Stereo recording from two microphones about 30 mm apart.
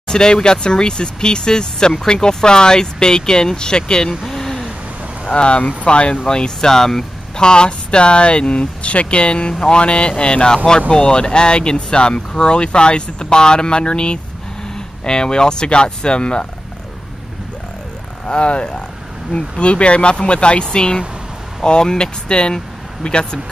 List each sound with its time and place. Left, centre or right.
0.1 s speech: left
4.3 s a sound: centre
5.2 s speech: left
6.2 s speech: left
7.3 s speech: left
9.5 s speech: left
9.8 s speech: left
18.2 s speech: left